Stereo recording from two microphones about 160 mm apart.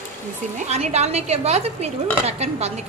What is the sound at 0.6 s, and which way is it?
A woman's voice, 40° right (ahead or behind).